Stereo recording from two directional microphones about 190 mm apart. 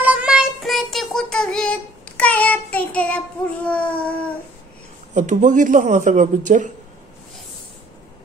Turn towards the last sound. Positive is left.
turn(degrees=-40)  # may be behind; listen again after turning